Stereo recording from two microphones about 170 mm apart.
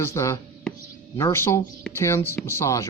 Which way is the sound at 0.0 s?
15° left (ahead or behind).